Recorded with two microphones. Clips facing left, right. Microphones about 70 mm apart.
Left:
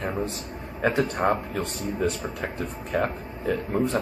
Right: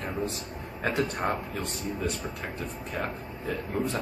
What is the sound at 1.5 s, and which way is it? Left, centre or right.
Speech, left.